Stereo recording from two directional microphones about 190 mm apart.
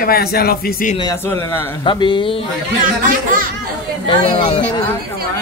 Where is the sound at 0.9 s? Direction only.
20° left (ahead or behind).